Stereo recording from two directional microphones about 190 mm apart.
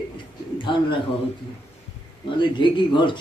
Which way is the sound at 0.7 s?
25° left (ahead or behind).